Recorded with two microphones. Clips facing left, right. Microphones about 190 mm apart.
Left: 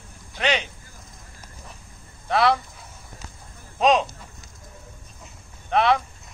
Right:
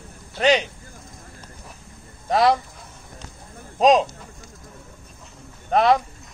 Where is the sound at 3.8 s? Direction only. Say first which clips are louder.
Right 3 dB; 35° right (ahead or behind).